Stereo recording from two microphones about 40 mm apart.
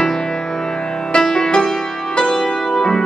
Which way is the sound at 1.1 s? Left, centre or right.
Centre.